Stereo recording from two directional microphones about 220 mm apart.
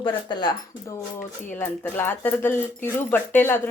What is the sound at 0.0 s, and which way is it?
Speech, 20° left (ahead or behind).